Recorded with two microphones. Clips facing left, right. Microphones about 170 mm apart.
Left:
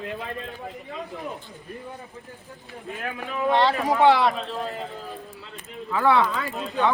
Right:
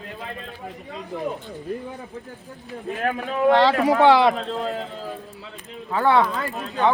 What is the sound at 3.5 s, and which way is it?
Speech, 90° right.